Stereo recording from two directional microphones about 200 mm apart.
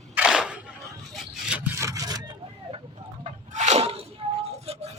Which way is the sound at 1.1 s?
Centre (ahead or behind).